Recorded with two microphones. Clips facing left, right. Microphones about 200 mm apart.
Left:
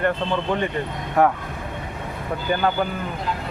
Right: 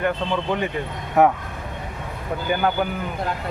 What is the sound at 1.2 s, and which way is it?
Speech, 20° right (ahead or behind).